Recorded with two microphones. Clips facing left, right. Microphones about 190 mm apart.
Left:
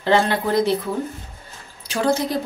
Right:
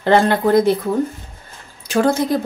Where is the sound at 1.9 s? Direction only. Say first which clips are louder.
Right 4 dB; 50° right (ahead or behind).